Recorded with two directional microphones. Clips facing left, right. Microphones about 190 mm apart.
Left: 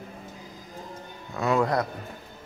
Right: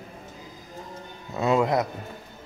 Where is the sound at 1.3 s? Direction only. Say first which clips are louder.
Right 2 dB; 20° right (ahead or behind).